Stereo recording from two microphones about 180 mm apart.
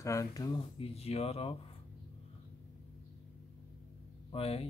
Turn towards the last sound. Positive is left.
turn(degrees=35)  # may be behind; listen again after turning